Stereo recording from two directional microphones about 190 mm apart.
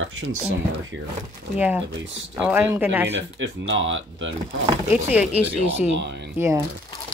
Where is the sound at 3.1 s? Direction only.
75° right (ahead or behind).